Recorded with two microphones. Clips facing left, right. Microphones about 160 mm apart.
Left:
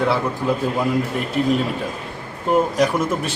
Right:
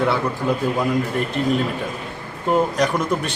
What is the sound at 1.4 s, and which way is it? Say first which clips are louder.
Speech: left 3 dB; 5° left (ahead or behind).